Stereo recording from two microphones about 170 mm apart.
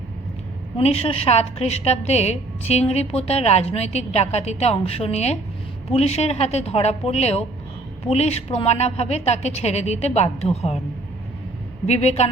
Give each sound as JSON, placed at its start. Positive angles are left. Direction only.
{"t": 0.8, "sound": "a woman's voice", "side_deg": 35}
{"t": 11.9, "sound": "a woman's voice", "side_deg": 40}